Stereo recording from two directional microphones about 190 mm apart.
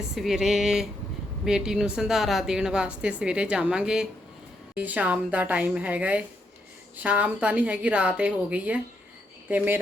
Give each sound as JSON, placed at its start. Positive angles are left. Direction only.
{"t": 0.2, "sound": "a woman's voice", "side_deg": 0}